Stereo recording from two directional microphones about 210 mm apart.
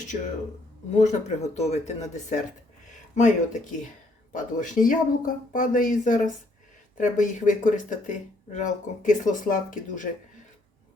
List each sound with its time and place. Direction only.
0.9 s speech: 35° left (ahead or behind)